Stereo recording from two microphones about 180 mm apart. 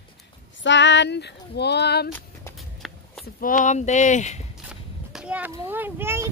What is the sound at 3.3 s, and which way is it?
Speech, 50° left (ahead or behind).